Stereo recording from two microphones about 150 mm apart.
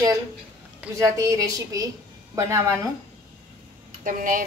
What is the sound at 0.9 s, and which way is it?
A woman's voice, 20° right (ahead or behind).